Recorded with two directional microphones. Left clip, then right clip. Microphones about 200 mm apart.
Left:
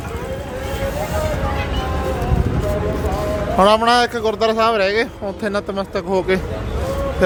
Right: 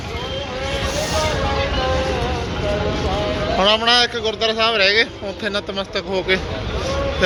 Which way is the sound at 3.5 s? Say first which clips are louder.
Left 2 dB; 35° left (ahead or behind).